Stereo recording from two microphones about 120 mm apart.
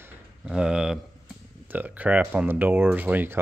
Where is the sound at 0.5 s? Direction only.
5° right (ahead or behind).